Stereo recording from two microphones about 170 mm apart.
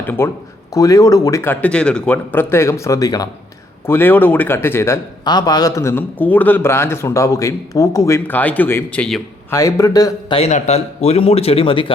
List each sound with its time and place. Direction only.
0.0 s a man's voice: 10° left (ahead or behind)
9.5 s a man's voice: 15° left (ahead or behind)
10.3 s speech: 40° left (ahead or behind)